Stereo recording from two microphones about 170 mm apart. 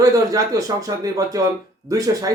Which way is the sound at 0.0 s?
20° right (ahead or behind).